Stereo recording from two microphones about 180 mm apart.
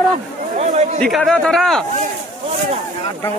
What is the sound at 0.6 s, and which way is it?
Chatter, 35° right (ahead or behind).